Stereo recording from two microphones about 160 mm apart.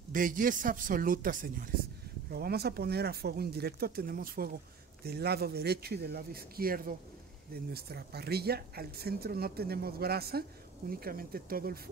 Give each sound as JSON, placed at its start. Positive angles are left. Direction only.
{"t": 0.1, "sound": "speech", "side_deg": -60}
{"t": 2.3, "sound": "speech", "side_deg": -80}
{"t": 5.0, "sound": "speech", "side_deg": -85}
{"t": 7.5, "sound": "speech", "side_deg": -80}